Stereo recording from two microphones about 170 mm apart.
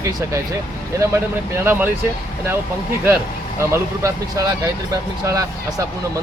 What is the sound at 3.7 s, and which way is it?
Speech, 20° right (ahead or behind).